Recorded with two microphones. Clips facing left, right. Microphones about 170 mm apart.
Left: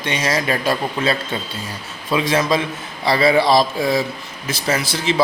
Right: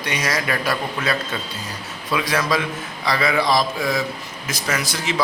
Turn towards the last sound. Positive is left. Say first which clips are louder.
# left 4 dB
turn(degrees=30)  # may be behind; listen again after turning